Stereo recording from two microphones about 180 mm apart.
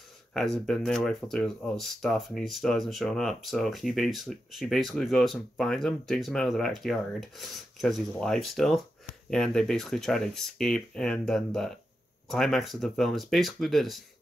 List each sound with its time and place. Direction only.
0.3 s speech: centre (ahead or behind)